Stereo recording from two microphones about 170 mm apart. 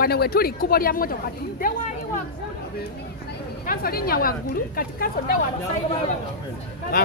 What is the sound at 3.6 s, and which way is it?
Speech, 60° left (ahead or behind).